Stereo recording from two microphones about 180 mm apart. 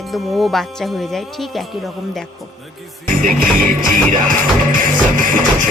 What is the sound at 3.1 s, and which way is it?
Music, 50° right (ahead or behind).